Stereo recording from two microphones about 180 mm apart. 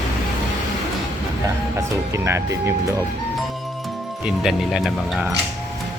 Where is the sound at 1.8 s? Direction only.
15° right (ahead or behind).